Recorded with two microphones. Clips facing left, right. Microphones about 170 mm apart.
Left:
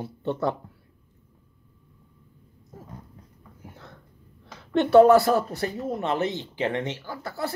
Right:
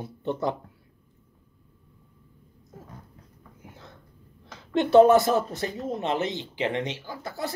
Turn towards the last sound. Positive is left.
turn(degrees=-20)  # may be behind; listen again after turning